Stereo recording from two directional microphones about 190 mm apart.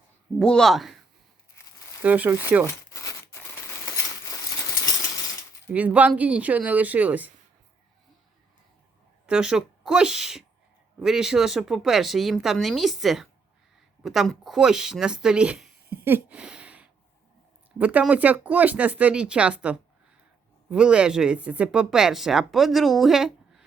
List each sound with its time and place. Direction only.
0.3 s speech: 5° left (ahead or behind)
2.0 s speech: 10° right (ahead or behind)
2.9 s a sound: 15° left (ahead or behind)
5.7 s speech: 10° right (ahead or behind)
9.2 s speech: 5° right (ahead or behind)